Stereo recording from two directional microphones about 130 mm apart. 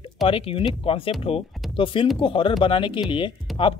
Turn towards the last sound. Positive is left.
turn(degrees=40)  # may be behind; listen again after turning